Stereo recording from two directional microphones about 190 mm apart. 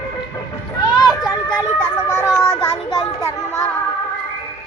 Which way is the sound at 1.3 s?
10° left (ahead or behind).